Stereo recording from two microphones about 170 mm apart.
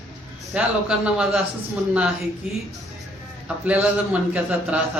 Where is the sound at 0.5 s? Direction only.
5° right (ahead or behind).